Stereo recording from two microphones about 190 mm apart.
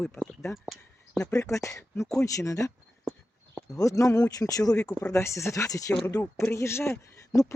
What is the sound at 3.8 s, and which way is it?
Speech, 15° left (ahead or behind).